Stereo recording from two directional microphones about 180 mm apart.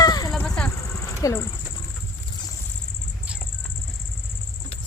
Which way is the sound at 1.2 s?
15° left (ahead or behind).